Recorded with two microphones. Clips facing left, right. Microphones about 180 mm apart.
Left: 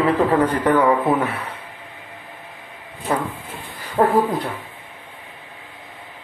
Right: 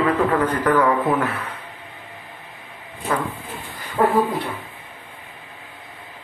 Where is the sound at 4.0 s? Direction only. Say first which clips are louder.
Left 1 dB; 25° left (ahead or behind).